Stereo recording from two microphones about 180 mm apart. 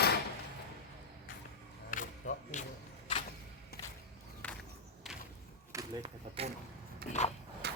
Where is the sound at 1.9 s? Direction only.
45° left (ahead or behind).